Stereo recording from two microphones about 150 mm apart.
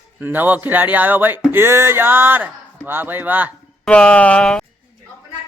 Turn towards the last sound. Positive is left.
turn(degrees=5)  # may be behind; listen again after turning